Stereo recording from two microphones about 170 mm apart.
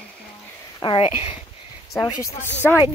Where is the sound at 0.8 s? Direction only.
30° left (ahead or behind).